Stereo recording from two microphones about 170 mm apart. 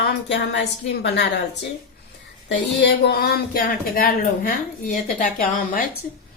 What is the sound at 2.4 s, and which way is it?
Speech, 85° left.